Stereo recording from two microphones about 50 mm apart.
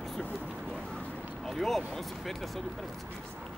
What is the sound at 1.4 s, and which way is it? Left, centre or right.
Speech, centre.